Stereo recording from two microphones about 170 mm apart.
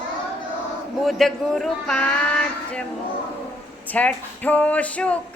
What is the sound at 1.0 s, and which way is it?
Speech, centre (ahead or behind).